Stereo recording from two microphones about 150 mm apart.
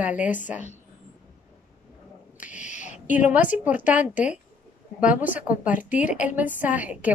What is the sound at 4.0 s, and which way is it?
Speech, 60° left (ahead or behind).